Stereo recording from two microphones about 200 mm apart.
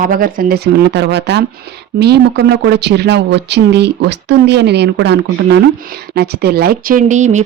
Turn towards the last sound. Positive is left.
turn(degrees=-35)  # may be behind; listen again after turning